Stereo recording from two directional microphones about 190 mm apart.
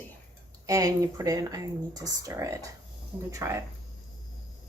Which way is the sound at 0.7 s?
20° right (ahead or behind).